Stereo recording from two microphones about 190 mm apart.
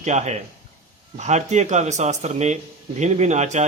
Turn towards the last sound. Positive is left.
turn(degrees=-35)  # may be behind; listen again after turning